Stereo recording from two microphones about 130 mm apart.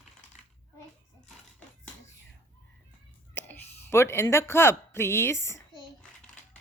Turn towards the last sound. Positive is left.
turn(degrees=20)  # may be behind; listen again after turning